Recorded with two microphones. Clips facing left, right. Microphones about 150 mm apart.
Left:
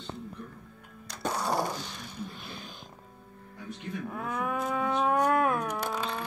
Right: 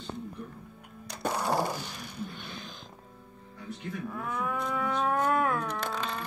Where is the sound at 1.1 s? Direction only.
10° right (ahead or behind).